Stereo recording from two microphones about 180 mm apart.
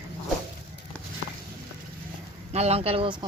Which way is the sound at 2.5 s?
35° right (ahead or behind).